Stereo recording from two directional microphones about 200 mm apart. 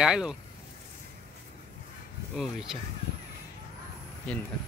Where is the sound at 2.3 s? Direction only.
Centre (ahead or behind).